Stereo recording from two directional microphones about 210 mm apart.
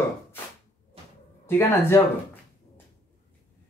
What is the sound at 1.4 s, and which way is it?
Speech, 10° left (ahead or behind).